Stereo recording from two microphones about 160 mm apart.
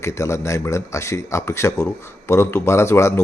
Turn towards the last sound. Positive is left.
turn(degrees=15)  # may be behind; listen again after turning